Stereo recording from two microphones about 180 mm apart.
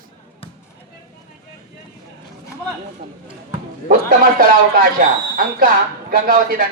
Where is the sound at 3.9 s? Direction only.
50° right (ahead or behind).